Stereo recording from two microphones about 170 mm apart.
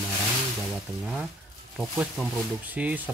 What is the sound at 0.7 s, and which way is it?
Speech, 5° right (ahead or behind).